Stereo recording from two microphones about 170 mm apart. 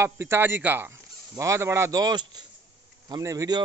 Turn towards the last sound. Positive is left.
turn(degrees=-20)  # may be behind; listen again after turning